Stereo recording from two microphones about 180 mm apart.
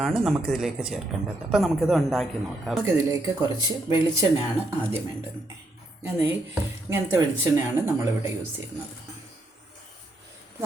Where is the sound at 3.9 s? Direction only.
15° right (ahead or behind).